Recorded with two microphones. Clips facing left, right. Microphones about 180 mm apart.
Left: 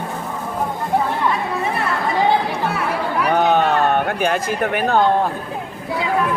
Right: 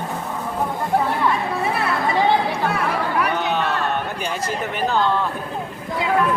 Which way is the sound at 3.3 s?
45° left (ahead or behind).